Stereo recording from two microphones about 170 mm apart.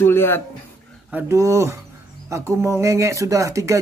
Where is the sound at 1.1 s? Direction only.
15° right (ahead or behind).